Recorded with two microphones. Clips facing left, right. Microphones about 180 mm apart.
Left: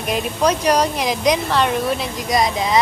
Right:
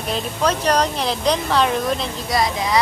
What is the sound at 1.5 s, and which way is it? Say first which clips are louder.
Speech: even; centre (ahead or behind).